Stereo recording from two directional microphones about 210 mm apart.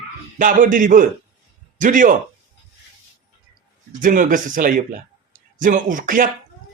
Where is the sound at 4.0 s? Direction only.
40° right (ahead or behind).